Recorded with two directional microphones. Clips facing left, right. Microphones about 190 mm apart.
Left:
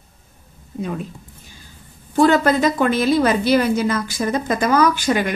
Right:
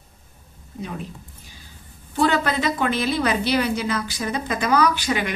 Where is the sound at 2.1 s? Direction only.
45° left (ahead or behind).